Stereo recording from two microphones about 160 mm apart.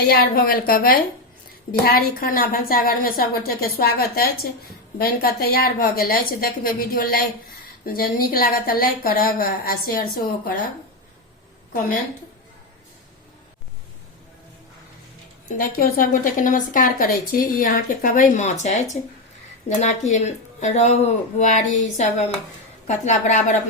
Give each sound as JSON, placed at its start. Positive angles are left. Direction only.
{"t": 0.0, "sound": "a woman's voice", "side_deg": 85}
{"t": 15.4, "sound": "a woman's voice", "side_deg": 60}